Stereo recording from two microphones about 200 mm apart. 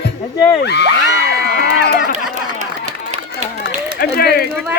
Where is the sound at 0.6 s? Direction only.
55° left (ahead or behind).